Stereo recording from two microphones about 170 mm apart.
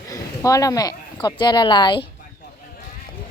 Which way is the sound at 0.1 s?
20° left (ahead or behind).